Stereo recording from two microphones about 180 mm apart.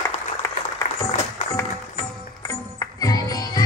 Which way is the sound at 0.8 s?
20° left (ahead or behind).